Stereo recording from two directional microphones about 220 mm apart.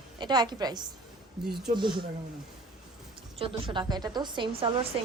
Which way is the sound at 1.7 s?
20° right (ahead or behind).